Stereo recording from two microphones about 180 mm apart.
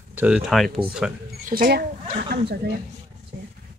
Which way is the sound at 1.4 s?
50° right (ahead or behind).